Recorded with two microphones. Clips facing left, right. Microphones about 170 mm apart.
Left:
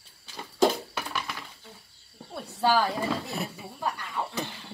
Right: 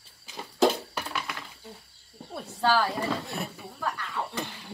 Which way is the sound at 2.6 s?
15° left (ahead or behind).